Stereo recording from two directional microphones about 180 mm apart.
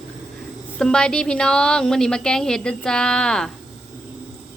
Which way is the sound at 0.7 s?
5° left (ahead or behind).